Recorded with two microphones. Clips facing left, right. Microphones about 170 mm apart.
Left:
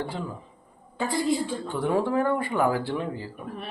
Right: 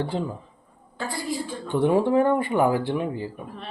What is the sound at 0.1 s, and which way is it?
Speech, 30° right (ahead or behind).